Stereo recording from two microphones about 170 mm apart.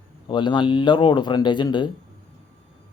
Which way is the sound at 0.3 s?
25° left (ahead or behind).